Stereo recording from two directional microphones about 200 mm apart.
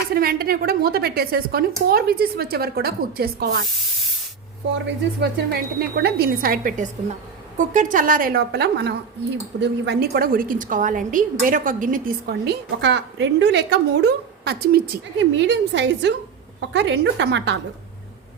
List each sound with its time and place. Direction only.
0.1 s a woman's voice: 50° right (ahead or behind)
4.9 s a woman's voice: 55° right (ahead or behind)
15.4 s a woman's voice: 60° right (ahead or behind)